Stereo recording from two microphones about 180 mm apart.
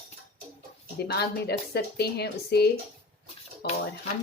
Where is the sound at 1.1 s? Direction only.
65° left (ahead or behind).